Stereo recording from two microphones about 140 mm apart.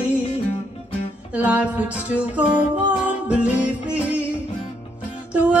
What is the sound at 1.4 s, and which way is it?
Music, 10° right (ahead or behind).